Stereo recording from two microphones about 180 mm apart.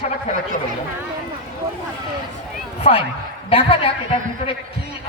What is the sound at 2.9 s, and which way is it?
A woman's voice, 35° left (ahead or behind).